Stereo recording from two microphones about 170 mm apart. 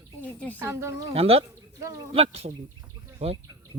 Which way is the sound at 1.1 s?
35° right (ahead or behind).